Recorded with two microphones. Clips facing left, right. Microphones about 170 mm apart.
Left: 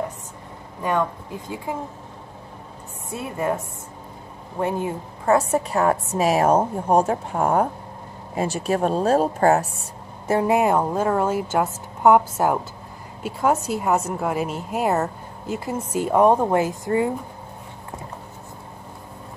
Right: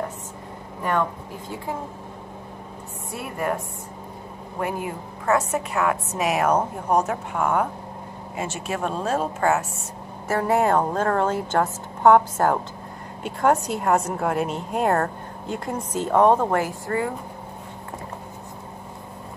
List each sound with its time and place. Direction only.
3.1 s a woman's voice: 20° left (ahead or behind)
10.2 s a woman's voice: 15° left (ahead or behind)